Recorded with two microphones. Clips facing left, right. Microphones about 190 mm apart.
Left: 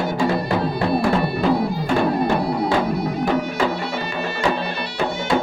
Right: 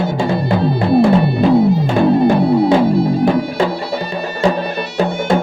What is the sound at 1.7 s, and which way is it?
Music, 25° right (ahead or behind).